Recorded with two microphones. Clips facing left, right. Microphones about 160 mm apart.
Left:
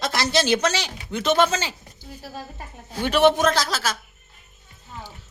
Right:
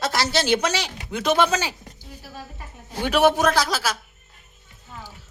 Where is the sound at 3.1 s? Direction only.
10° right (ahead or behind).